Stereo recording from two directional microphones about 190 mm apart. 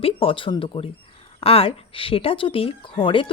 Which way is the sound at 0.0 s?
30° left (ahead or behind).